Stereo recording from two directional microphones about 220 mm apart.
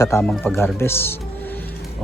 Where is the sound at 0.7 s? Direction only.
10° left (ahead or behind).